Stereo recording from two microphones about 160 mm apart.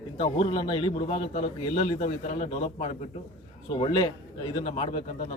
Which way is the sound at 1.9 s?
50° left (ahead or behind).